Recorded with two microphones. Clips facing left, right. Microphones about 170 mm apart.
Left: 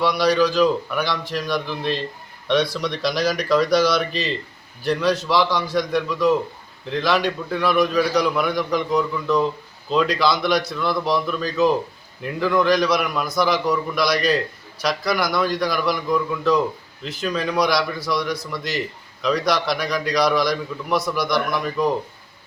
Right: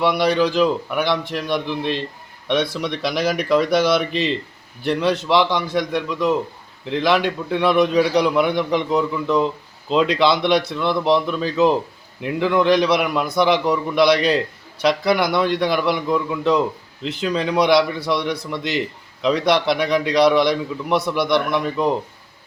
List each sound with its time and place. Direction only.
0.2 s a man's voice: 20° right (ahead or behind)
3.2 s speech: 60° right (ahead or behind)
3.5 s a man's voice: 20° right (ahead or behind)